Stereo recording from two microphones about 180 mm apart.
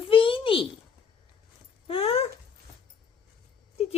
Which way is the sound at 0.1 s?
30° left (ahead or behind).